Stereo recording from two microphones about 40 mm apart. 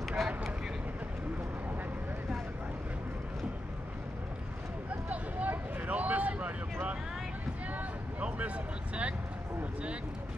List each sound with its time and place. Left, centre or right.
0.2 s vehicle: centre
5.1 s vehicle: right